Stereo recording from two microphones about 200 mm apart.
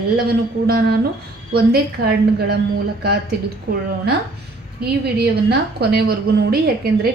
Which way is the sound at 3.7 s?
50° right (ahead or behind).